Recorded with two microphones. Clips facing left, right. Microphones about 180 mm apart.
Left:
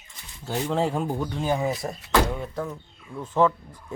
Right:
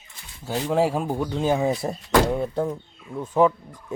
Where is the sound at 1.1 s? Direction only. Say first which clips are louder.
Right 4 dB; 20° right (ahead or behind).